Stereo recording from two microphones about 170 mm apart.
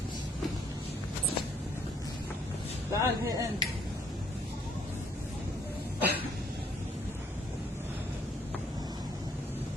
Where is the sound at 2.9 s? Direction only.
20° right (ahead or behind).